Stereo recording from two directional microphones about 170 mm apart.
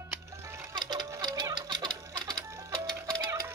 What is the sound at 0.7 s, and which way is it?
Sewing machine, 20° right (ahead or behind).